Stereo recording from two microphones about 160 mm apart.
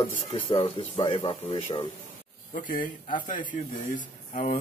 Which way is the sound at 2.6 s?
55° left (ahead or behind).